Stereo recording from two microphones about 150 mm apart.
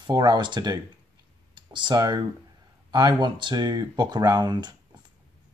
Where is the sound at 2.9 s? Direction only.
30° right (ahead or behind).